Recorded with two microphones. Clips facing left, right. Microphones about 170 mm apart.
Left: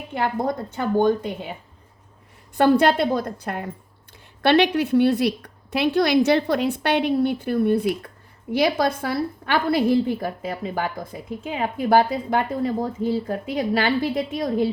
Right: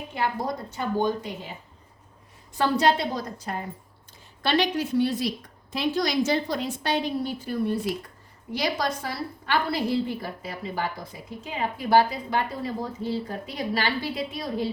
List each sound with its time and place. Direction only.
0.1 s a woman's voice: 55° left (ahead or behind)
2.6 s a woman's voice: 55° left (ahead or behind)